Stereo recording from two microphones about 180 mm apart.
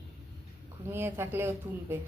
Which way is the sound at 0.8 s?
15° right (ahead or behind).